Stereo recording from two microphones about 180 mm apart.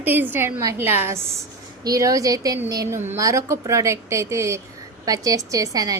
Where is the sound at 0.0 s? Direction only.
10° right (ahead or behind).